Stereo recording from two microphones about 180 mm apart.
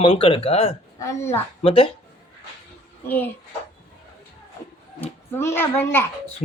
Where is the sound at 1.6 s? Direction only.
30° left (ahead or behind).